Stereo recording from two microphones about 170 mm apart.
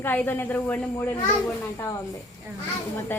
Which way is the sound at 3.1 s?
10° left (ahead or behind).